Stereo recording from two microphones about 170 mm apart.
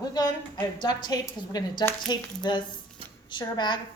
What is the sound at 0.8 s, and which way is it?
Speech, 25° left (ahead or behind).